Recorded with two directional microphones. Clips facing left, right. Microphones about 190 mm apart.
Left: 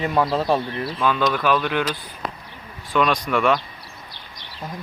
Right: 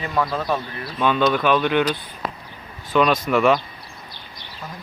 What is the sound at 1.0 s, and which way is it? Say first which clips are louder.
Speech: right 3 dB; centre (ahead or behind).